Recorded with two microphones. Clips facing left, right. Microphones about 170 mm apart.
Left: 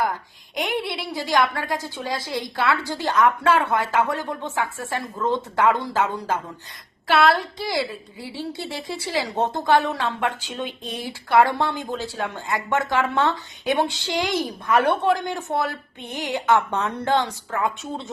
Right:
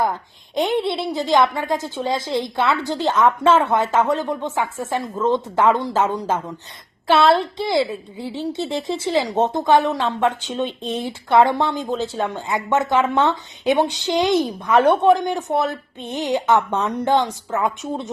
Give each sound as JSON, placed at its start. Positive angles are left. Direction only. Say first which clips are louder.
{"t": 0.5, "sound": "a woman's voice", "louder": "right 6 dB", "side_deg": -25}